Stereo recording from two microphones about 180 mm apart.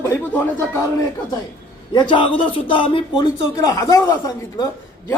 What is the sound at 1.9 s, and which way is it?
Speech, 25° left (ahead or behind).